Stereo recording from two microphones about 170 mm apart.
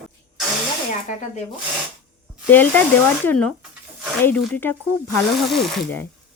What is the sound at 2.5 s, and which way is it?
Speech, 10° left (ahead or behind).